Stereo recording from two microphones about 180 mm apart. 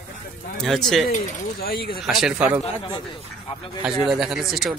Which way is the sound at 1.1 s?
50° left (ahead or behind).